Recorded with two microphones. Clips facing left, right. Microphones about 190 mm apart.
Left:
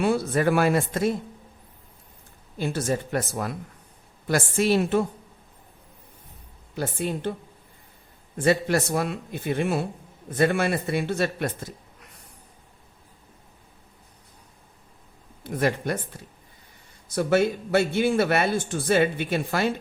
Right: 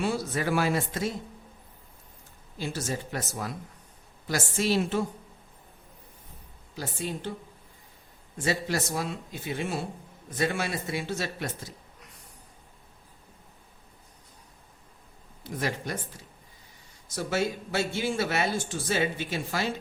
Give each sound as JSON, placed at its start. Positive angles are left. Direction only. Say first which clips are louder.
{"t": 0.0, "sound": "a man's voice", "louder": "left 7 dB", "side_deg": 55}
{"t": 2.6, "sound": "a man's voice", "louder": "left 6 dB", "side_deg": 55}
{"t": 6.7, "sound": "a man's voice", "louder": "left 6 dB", "side_deg": 60}
{"t": 8.4, "sound": "a man's voice", "louder": "left 7 dB", "side_deg": 60}
{"t": 15.4, "sound": "a man's voice", "louder": "left 7 dB", "side_deg": 55}
{"t": 17.2, "sound": "a man's voice", "louder": "left 7 dB", "side_deg": 55}